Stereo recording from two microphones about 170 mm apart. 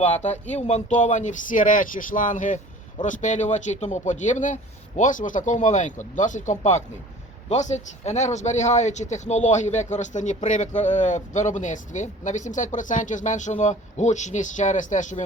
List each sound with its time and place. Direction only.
0.0 s speech: 40° left (ahead or behind)